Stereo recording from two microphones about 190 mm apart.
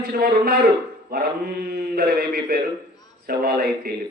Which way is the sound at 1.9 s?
55° right (ahead or behind).